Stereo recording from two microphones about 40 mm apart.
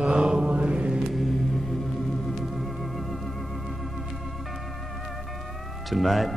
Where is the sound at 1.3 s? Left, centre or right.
Centre.